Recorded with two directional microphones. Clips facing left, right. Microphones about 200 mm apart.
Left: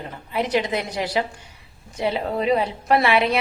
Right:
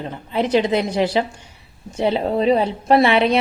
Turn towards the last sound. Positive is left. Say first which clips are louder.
# right 4 dB
turn(degrees=-30)  # may be behind; listen again after turning